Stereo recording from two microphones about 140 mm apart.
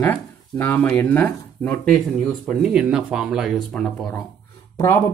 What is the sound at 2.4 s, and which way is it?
Speech, 5° right (ahead or behind).